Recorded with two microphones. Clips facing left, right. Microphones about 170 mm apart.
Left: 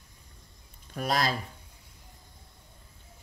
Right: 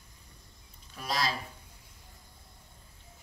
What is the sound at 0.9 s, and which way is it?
Speech, 50° left (ahead or behind).